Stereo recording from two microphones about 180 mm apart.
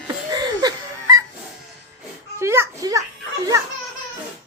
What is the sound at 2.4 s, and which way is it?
Children playing, 15° right (ahead or behind).